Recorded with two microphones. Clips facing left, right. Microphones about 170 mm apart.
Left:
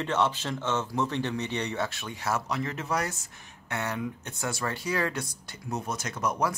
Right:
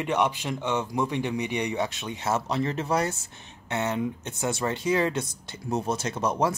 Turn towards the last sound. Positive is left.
turn(degrees=-30)  # may be behind; listen again after turning